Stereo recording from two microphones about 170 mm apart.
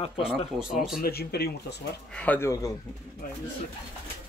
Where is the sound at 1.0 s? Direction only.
65° left (ahead or behind).